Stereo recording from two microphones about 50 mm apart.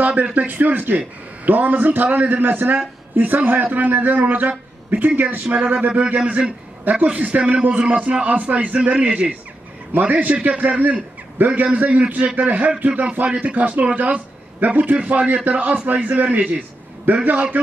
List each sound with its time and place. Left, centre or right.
0.0 s a man's voice: right
6.8 s a man's voice: right
7.1 s speech: right
9.9 s a man's voice: right